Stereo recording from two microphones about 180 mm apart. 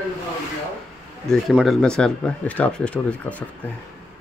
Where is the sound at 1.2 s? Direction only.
Centre (ahead or behind).